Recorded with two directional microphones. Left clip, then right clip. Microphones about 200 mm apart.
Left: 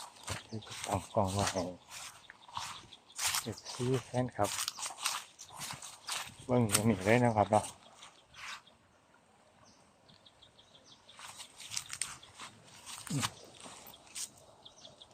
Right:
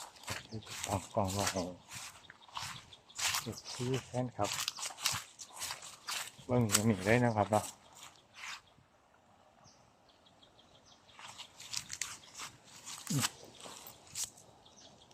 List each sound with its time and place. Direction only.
0.0 s a sound: 15° left (ahead or behind)
0.9 s speech: 30° left (ahead or behind)
1.2 s speech: 15° left (ahead or behind)
1.5 s a sound: 20° left (ahead or behind)
3.5 s speech: 25° left (ahead or behind)
5.4 s walk: 25° left (ahead or behind)
8.4 s a sound: 25° left (ahead or behind)
11.2 s biting: 20° left (ahead or behind)
13.1 s biting: centre (ahead or behind)